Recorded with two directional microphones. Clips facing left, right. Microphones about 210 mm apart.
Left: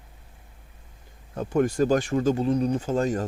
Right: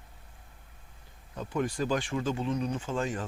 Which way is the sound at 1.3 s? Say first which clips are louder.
Left 8 dB; 50° left (ahead or behind).